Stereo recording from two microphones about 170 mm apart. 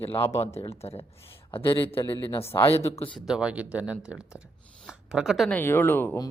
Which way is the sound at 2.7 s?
35° left (ahead or behind).